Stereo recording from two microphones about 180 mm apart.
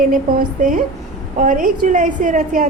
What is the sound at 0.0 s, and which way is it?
A woman's voice, 50° right (ahead or behind).